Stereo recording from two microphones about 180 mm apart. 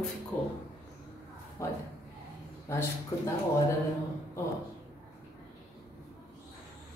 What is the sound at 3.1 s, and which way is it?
Speech, 15° left (ahead or behind).